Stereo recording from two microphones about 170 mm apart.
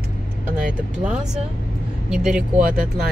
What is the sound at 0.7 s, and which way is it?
Speech, 5° right (ahead or behind).